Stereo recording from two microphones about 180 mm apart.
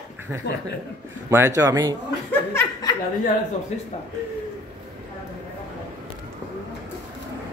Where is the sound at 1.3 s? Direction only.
15° right (ahead or behind).